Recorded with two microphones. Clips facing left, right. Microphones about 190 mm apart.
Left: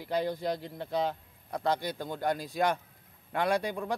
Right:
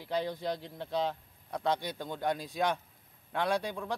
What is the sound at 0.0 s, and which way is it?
Speech, 10° left (ahead or behind).